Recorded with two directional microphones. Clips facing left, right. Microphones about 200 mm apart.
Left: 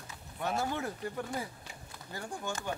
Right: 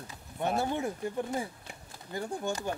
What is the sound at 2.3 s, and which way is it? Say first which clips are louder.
Speech: right 4 dB; 35° right (ahead or behind).